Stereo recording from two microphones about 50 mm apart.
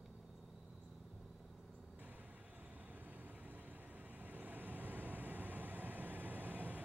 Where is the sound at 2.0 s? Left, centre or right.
Right.